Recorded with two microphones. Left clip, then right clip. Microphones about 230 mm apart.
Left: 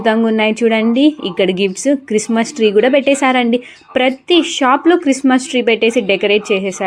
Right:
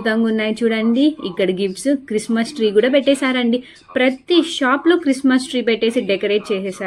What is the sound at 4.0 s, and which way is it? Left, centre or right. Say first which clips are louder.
Speech: left 3 dB; left.